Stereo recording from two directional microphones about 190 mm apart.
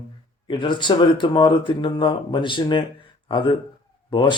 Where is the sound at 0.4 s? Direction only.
25° left (ahead or behind).